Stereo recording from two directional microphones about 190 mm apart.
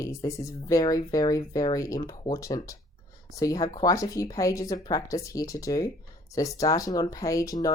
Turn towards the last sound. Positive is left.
turn(degrees=20)  # may be behind; listen again after turning